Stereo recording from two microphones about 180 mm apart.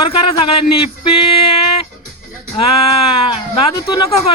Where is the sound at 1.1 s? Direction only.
30° left (ahead or behind).